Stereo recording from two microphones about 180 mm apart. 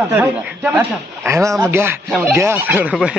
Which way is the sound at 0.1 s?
10° right (ahead or behind).